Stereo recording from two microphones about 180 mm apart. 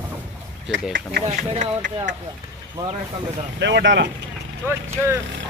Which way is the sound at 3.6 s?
80° right.